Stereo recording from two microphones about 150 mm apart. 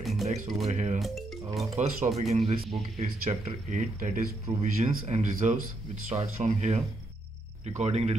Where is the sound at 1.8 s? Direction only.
50° right (ahead or behind).